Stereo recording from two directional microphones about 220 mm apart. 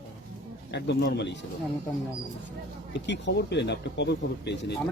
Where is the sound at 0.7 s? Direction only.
50° left (ahead or behind).